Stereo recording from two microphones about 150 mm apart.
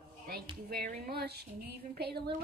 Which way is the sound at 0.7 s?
90° right.